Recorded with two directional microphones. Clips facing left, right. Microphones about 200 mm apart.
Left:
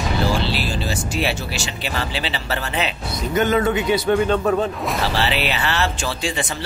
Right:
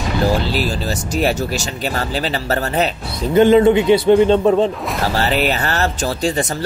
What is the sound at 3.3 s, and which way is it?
A man's voice, 25° right (ahead or behind).